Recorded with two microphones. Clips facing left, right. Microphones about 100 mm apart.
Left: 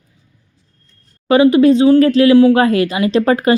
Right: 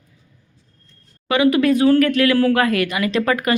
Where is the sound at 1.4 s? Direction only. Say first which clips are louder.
Left 4 dB; 30° left (ahead or behind).